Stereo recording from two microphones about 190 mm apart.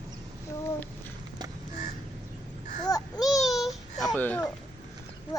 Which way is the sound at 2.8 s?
20° left (ahead or behind).